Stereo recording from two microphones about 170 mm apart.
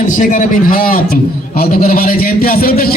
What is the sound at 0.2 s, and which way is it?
A man's voice, 50° left (ahead or behind).